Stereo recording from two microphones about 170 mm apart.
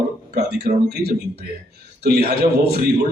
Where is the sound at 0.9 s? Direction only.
70° right (ahead or behind).